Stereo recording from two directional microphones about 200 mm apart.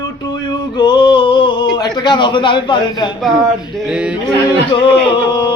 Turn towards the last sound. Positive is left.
turn(degrees=25)  # may be behind; listen again after turning